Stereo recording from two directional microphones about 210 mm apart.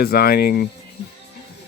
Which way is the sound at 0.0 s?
45° left (ahead or behind).